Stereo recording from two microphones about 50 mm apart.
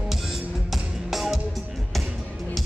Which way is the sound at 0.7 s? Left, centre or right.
Centre.